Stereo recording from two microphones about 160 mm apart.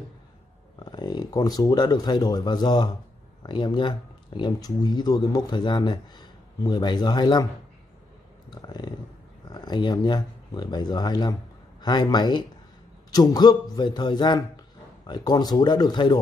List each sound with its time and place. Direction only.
0.7 s speech: 25° left (ahead or behind)
8.5 s a sound: 25° left (ahead or behind)
9.5 s speech: 25° left (ahead or behind)